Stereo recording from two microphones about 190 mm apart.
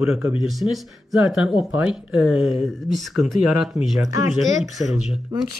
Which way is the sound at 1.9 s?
5° right (ahead or behind).